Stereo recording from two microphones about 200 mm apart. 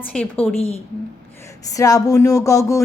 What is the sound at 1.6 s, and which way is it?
A woman's voice, 15° left (ahead or behind).